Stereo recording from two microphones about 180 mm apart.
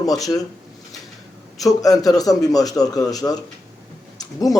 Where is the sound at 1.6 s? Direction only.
20° left (ahead or behind).